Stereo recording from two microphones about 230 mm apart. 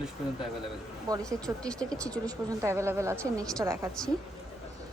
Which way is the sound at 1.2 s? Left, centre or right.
Centre.